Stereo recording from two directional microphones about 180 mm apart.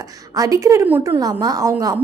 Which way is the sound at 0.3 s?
20° right (ahead or behind).